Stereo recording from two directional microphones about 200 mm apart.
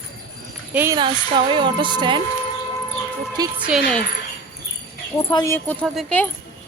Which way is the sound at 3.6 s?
5° right (ahead or behind).